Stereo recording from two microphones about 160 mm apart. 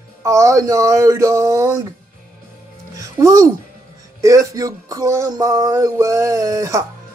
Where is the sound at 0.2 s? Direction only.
20° right (ahead or behind).